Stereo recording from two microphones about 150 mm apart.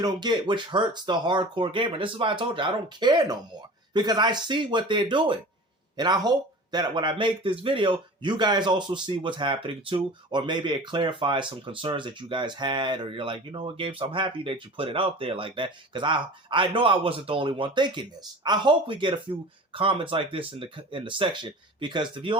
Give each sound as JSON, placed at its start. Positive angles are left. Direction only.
{"t": 0.0, "sound": "speech", "side_deg": -30}